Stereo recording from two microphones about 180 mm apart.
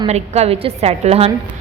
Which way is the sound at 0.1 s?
35° right (ahead or behind).